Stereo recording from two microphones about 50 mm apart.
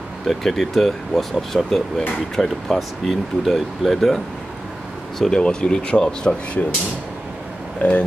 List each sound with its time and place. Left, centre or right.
0.3 s speech: centre
5.3 s speech: centre
7.8 s speech: left